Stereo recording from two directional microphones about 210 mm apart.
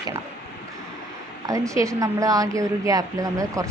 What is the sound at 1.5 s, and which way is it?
Speech, 15° right (ahead or behind).